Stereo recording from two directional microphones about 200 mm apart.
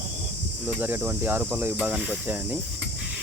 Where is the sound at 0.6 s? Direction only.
10° right (ahead or behind).